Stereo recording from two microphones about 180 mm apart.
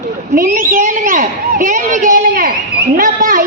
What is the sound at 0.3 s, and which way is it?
A child's voice, 50° right (ahead or behind).